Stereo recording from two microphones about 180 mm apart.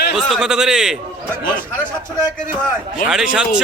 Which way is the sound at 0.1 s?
Centre (ahead or behind).